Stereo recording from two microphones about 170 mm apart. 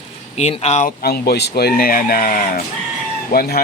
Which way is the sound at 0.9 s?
65° left (ahead or behind).